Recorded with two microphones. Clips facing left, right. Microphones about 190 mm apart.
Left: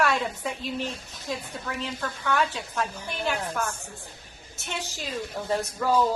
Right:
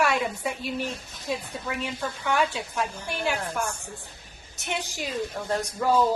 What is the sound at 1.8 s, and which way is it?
A woman's voice, 10° right (ahead or behind).